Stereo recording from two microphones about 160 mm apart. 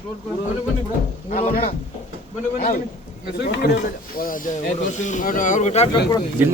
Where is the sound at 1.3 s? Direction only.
60° left (ahead or behind).